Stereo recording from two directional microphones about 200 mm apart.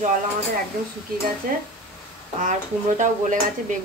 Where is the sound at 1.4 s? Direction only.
45° right (ahead or behind).